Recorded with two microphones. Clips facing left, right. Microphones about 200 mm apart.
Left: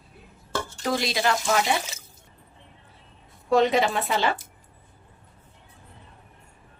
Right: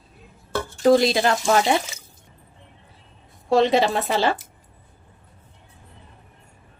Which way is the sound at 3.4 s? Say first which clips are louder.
Right 3 dB; 30° right (ahead or behind).